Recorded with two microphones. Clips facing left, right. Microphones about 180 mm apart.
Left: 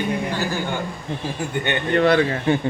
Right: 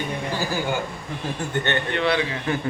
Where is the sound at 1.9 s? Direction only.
45° left (ahead or behind).